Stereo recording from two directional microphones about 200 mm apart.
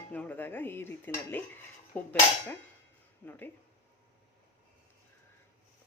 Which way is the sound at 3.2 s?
10° left (ahead or behind).